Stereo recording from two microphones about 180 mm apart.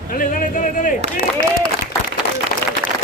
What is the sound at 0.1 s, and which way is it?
Speech, 45° left (ahead or behind).